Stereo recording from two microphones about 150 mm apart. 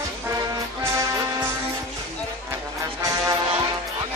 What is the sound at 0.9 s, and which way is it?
Music, 20° right (ahead or behind).